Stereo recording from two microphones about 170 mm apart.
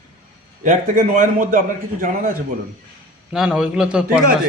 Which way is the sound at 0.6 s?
50° right (ahead or behind).